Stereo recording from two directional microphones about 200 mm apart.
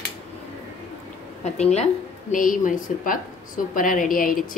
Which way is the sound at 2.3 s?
40° left (ahead or behind).